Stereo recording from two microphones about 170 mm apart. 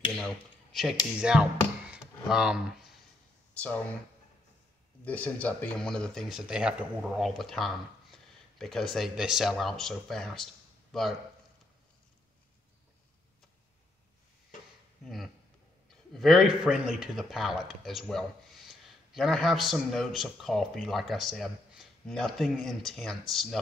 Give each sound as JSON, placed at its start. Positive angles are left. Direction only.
{"t": 0.1, "sound": "speech", "side_deg": 0}
{"t": 3.5, "sound": "speech", "side_deg": 10}
{"t": 5.0, "sound": "speech", "side_deg": 10}
{"t": 16.1, "sound": "speech", "side_deg": 0}